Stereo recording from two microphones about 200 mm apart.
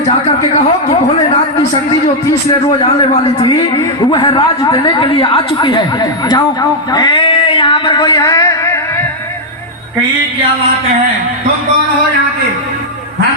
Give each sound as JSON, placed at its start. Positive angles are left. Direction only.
{"t": 4.1, "sound": "speech", "side_deg": 20}